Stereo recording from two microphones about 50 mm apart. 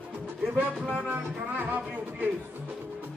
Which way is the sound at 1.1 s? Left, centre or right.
Right.